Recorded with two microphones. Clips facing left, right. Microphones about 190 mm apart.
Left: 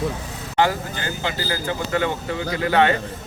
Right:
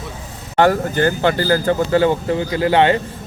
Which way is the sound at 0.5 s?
55° right (ahead or behind).